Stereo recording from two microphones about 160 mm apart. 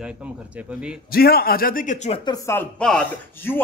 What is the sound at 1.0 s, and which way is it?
Speech, 70° left (ahead or behind).